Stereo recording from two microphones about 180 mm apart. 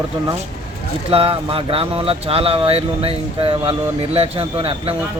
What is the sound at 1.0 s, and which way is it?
Speech, 30° right (ahead or behind).